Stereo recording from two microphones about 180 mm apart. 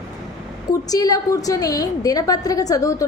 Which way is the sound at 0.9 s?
20° left (ahead or behind).